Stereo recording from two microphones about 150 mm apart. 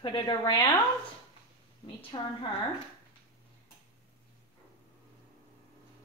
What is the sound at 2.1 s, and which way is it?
Speech, 35° left (ahead or behind).